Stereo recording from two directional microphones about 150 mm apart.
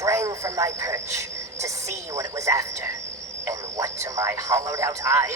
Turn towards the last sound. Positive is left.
turn(degrees=-20)  # may be behind; listen again after turning